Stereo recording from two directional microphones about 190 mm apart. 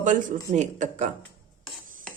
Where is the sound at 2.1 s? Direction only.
5° left (ahead or behind).